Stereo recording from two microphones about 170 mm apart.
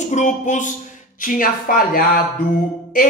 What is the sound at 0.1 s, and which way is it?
Speech, 45° left (ahead or behind).